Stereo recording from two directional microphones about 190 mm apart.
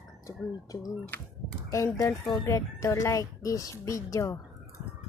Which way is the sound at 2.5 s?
15° left (ahead or behind).